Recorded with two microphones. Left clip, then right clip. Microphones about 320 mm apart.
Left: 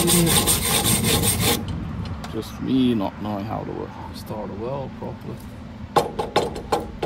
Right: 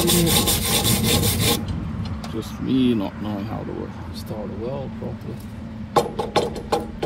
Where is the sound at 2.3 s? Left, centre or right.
Left.